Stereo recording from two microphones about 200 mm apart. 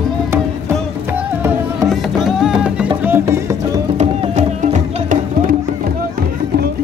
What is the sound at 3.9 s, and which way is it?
Music, 35° right (ahead or behind).